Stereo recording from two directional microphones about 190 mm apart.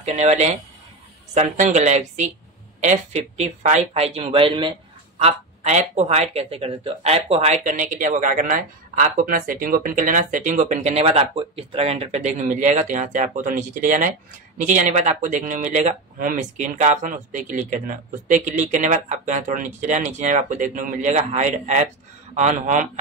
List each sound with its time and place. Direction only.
0.0 s speech: 35° right (ahead or behind)
5.2 s speech: 35° right (ahead or behind)